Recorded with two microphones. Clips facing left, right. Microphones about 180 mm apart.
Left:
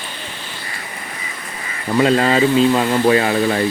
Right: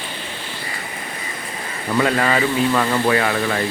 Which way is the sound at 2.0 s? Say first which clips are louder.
Left 4 dB; 25° left (ahead or behind).